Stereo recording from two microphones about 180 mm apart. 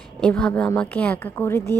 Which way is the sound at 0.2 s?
5° left (ahead or behind).